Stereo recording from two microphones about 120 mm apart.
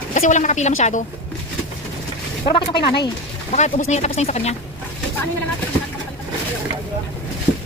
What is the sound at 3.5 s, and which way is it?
Speech, 70° left (ahead or behind).